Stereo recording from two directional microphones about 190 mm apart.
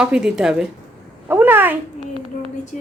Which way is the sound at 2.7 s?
45° left (ahead or behind).